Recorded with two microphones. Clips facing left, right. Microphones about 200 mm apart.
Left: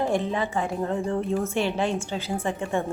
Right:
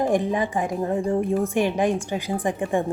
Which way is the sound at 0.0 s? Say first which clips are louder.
Right 3 dB; 15° right (ahead or behind).